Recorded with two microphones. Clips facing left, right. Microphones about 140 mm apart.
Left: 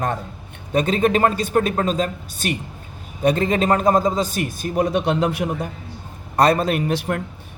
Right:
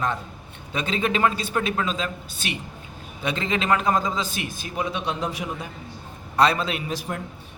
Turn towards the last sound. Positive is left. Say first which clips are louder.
# left 8 dB
turn(degrees=60)  # may be behind; listen again after turning